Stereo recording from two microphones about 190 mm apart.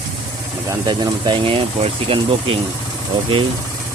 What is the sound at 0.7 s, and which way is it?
Speech, 20° right (ahead or behind).